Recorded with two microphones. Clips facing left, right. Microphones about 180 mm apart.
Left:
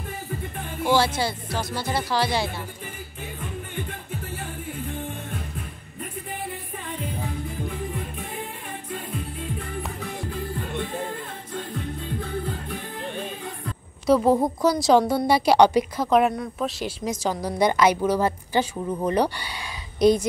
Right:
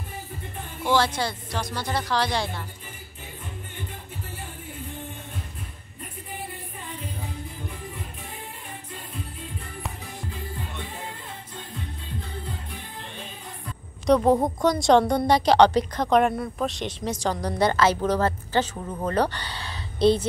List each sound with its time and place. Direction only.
0.8 s a woman's voice: 10° left (ahead or behind)
11.7 s music: 55° left (ahead or behind)
14.0 s a woman's voice: 5° left (ahead or behind)